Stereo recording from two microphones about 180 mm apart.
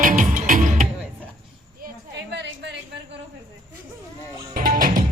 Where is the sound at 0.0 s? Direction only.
45° right (ahead or behind).